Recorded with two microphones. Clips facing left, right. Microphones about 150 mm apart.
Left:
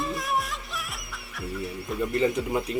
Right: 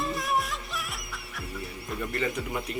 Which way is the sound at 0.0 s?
Centre (ahead or behind).